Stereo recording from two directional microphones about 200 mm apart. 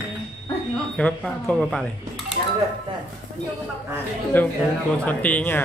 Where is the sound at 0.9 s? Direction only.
5° left (ahead or behind).